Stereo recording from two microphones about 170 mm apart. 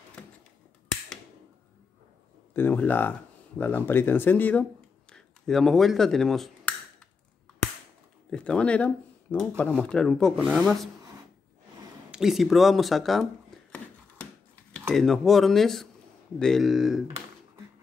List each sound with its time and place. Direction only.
2.5 s speech: 10° left (ahead or behind)
8.3 s speech: 5° left (ahead or behind)
12.1 s a sound: centre (ahead or behind)
14.9 s speech: centre (ahead or behind)